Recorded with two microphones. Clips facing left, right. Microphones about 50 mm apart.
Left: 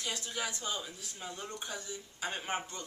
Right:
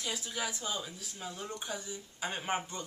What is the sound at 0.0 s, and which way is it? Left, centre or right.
Speech, centre.